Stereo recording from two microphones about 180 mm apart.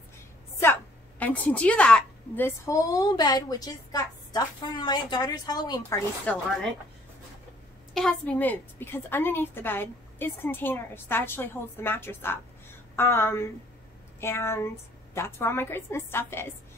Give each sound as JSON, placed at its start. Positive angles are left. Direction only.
{"t": 1.2, "sound": "a woman's voice", "side_deg": 10}
{"t": 6.3, "sound": "a woman's voice", "side_deg": 10}
{"t": 7.9, "sound": "a woman's voice", "side_deg": 5}